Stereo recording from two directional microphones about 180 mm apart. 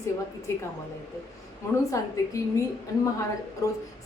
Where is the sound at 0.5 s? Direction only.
15° left (ahead or behind).